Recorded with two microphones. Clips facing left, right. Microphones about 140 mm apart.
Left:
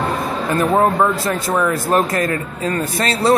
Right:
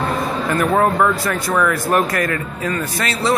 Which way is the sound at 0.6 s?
25° left (ahead or behind).